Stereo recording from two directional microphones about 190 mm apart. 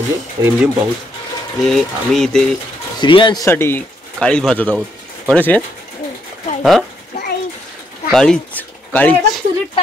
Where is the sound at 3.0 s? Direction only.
25° left (ahead or behind); by 5.6 s 10° left (ahead or behind).